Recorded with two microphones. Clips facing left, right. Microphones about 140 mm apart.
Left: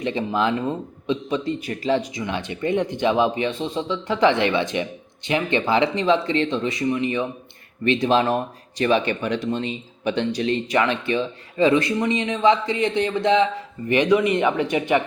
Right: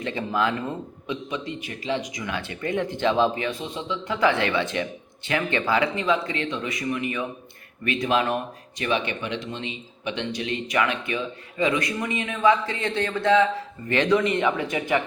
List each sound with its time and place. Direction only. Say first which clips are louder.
0.0 s speech: left 3 dB; 20° left (ahead or behind)